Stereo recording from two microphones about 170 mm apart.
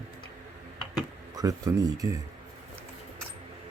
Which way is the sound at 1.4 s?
20° right (ahead or behind).